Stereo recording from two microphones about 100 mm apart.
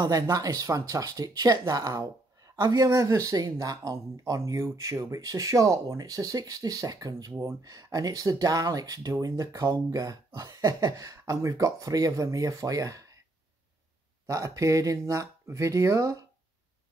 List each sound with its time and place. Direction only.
0.0 s speech: 35° right (ahead or behind)
14.2 s speech: 35° right (ahead or behind)